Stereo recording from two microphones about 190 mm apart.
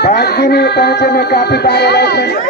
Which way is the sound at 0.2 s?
60° left (ahead or behind).